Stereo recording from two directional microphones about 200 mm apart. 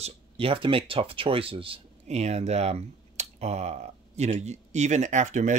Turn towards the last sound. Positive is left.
turn(degrees=-35)  # may be behind; listen again after turning